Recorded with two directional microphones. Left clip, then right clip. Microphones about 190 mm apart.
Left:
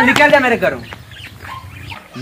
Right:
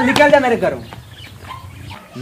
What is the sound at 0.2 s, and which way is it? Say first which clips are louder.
Speech: left 1 dB; 10° right (ahead or behind).